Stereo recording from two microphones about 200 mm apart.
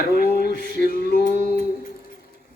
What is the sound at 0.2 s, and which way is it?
Male singing, 50° left (ahead or behind).